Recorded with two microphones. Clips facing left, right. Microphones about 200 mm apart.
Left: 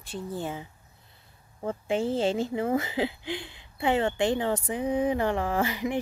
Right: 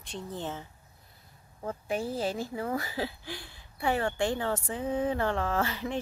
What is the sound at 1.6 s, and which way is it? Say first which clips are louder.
A woman's voice: left 5 dB; 25° left (ahead or behind).